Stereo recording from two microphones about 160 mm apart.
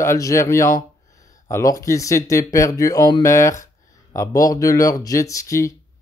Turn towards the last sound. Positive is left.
turn(degrees=20)  # may be behind; listen again after turning